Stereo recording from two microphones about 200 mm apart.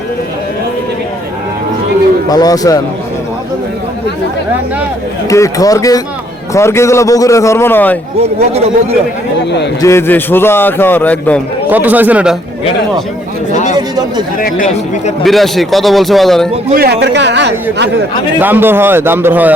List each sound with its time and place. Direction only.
2.3 s speech: 20° left (ahead or behind)
5.3 s a man's voice: 15° left (ahead or behind)
9.8 s a man's voice: 10° left (ahead or behind)
11.7 s a man's voice: 10° right (ahead or behind)
13.5 s speech: 35° left (ahead or behind)
13.7 s speech: 20° right (ahead or behind)
14.3 s speech: 40° left (ahead or behind)
15.2 s a man's voice: centre (ahead or behind)
16.7 s a man's voice: 55° right (ahead or behind)
18.3 s a man's voice: 10° right (ahead or behind)